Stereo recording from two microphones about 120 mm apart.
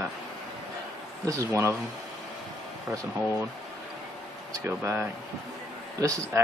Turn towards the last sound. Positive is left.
turn(degrees=-25)  # may be behind; listen again after turning